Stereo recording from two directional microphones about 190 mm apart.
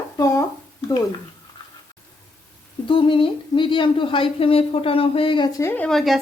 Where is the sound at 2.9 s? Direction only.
25° left (ahead or behind).